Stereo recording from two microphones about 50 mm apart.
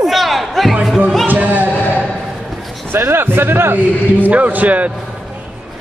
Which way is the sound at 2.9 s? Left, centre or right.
Right.